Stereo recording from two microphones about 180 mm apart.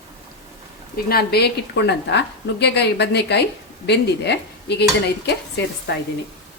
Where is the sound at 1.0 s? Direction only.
60° left (ahead or behind); by 6.0 s 75° left (ahead or behind).